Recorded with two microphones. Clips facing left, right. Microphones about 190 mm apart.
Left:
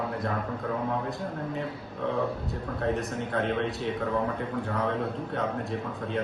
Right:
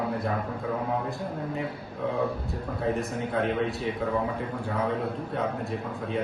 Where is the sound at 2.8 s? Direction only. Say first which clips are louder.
Right 1 dB; centre (ahead or behind).